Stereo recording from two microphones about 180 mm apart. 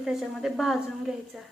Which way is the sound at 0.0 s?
Centre (ahead or behind).